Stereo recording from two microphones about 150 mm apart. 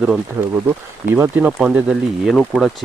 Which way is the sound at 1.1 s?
10° right (ahead or behind).